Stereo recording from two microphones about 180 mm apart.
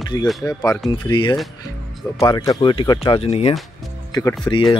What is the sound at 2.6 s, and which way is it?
Speech, 30° left (ahead or behind).